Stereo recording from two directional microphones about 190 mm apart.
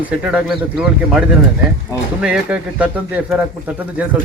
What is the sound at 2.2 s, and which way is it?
Speech, 5° right (ahead or behind).